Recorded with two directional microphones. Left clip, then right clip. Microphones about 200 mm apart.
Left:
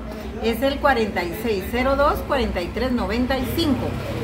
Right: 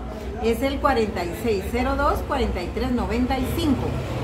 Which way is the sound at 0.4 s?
5° left (ahead or behind).